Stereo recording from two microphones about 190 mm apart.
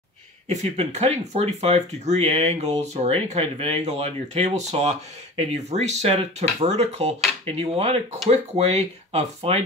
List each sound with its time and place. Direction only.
0.5 s speech: 35° right (ahead or behind)